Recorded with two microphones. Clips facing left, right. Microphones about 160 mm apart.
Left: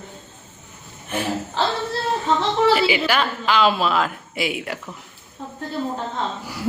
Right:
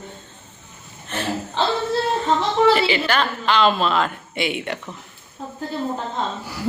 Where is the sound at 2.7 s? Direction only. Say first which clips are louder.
Even; 5° left (ahead or behind).